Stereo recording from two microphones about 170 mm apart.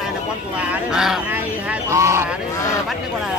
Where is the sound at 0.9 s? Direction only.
5° right (ahead or behind).